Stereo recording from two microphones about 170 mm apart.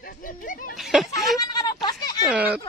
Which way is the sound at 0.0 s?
55° left (ahead or behind).